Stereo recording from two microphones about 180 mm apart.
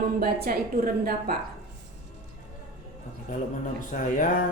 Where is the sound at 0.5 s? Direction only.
55° right (ahead or behind).